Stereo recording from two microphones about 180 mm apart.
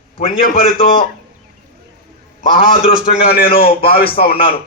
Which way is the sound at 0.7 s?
30° left (ahead or behind).